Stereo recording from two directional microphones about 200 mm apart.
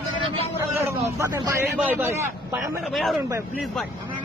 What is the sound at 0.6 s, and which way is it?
Speech, 15° right (ahead or behind).